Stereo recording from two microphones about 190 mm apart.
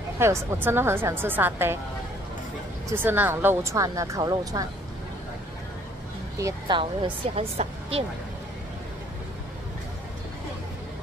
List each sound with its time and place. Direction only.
0.2 s a woman's voice: 15° right (ahead or behind)
2.9 s a woman's voice: 10° right (ahead or behind)
6.3 s speech: 15° right (ahead or behind)
6.8 s speech: 30° right (ahead or behind)